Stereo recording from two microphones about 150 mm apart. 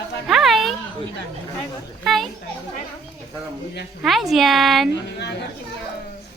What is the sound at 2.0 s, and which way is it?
Speech, centre (ahead or behind).